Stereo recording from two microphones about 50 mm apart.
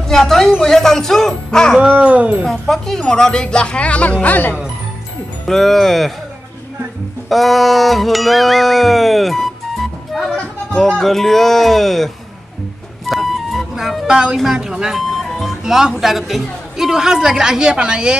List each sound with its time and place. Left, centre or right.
0.1 s music: centre
0.6 s speech: centre
1.8 s speech: right
2.4 s music: centre
3.0 s speech: centre; by 4.6 s left
5.5 s music: centre
7.2 s music: centre
11.0 s music: centre
13.1 s music: centre
14.1 s a woman's voice: centre
15.0 s music: centre
15.6 s a woman's voice: centre